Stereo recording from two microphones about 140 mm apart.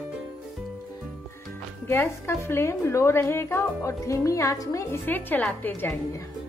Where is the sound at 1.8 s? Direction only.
20° left (ahead or behind).